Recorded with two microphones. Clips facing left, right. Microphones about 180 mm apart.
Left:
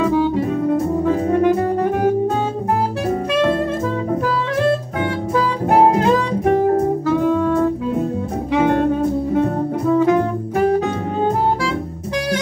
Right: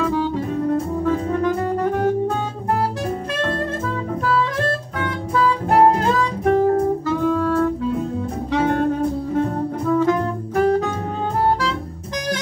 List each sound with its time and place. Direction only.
0.0 s music: 15° left (ahead or behind)
6.0 s music: 15° left (ahead or behind)
9.8 s music: 20° left (ahead or behind)